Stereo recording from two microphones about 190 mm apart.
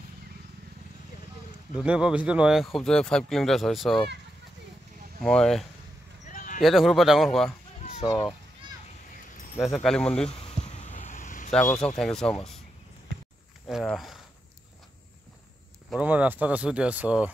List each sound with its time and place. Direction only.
1.8 s speech: 5° right (ahead or behind)
5.2 s speech: 5° left (ahead or behind)
6.3 s a sound: 45° left (ahead or behind)
6.6 s speech: centre (ahead or behind)
9.6 s speech: 5° left (ahead or behind)
10.2 s a sound: 30° left (ahead or behind)
12.0 s speech: 5° left (ahead or behind)
13.1 s a sound: 75° right (ahead or behind)
13.7 s speech: centre (ahead or behind)
15.9 s speech: 5° right (ahead or behind)